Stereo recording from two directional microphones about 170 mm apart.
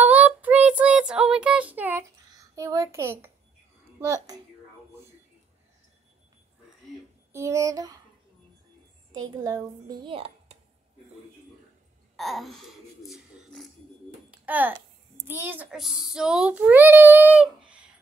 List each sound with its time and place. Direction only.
0.0 s child singing: 10° right (ahead or behind)
2.5 s a child's voice: 20° right (ahead or behind)
7.3 s a woman's voice: 15° right (ahead or behind)
9.4 s a woman's voice: 20° right (ahead or behind)
12.2 s speech: centre (ahead or behind)
14.3 s a sound: 10° right (ahead or behind)
15.2 s a child's voice: 10° right (ahead or behind)